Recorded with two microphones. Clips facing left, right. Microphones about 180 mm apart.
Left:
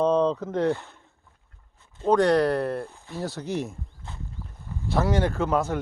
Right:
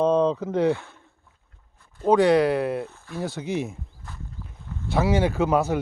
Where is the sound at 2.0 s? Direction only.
5° right (ahead or behind).